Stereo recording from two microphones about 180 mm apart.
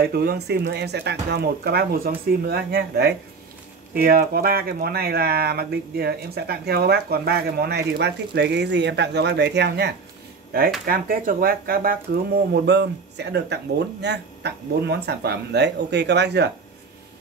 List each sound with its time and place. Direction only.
0.0 s speech: 60° right (ahead or behind)
10.9 s speech: 50° right (ahead or behind)
12.6 s speech: 70° right (ahead or behind)